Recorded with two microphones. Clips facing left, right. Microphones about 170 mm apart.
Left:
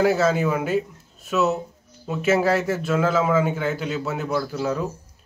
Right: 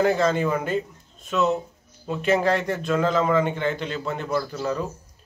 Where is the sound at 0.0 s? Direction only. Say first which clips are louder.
Left 1 dB; 5° left (ahead or behind).